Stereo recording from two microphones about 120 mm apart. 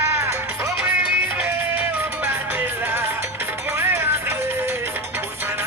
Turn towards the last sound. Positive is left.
turn(degrees=-15)  # may be behind; listen again after turning